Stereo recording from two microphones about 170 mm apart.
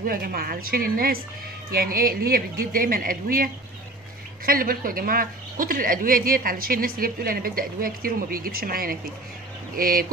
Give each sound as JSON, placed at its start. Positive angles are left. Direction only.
{"t": 0.0, "sound": "speech", "side_deg": -60}
{"t": 4.5, "sound": "speech", "side_deg": -55}